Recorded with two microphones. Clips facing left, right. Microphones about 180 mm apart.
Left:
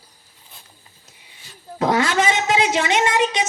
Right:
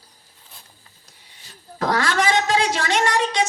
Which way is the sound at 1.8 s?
20° left (ahead or behind).